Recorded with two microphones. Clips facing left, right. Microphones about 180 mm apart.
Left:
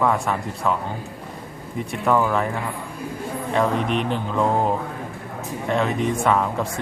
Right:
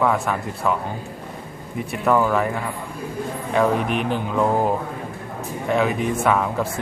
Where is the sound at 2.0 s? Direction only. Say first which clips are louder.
Right 1 dB; centre (ahead or behind).